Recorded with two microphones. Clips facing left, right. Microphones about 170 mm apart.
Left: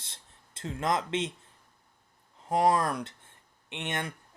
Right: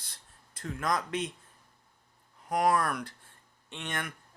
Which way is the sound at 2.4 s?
25° left (ahead or behind).